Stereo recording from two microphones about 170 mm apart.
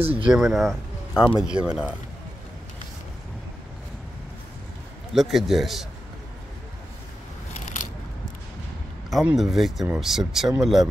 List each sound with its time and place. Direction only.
0.0 s speech: 35° right (ahead or behind)
0.3 s speech: centre (ahead or behind)
5.1 s speech: centre (ahead or behind)
9.1 s speech: 5° right (ahead or behind)